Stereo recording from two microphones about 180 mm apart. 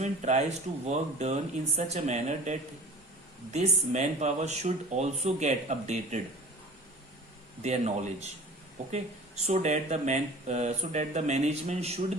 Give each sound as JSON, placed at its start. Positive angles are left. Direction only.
{"t": 0.0, "sound": "speech", "side_deg": -40}
{"t": 7.6, "sound": "speech", "side_deg": -40}